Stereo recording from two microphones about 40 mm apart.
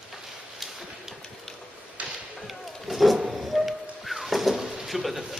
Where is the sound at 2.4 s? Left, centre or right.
Centre.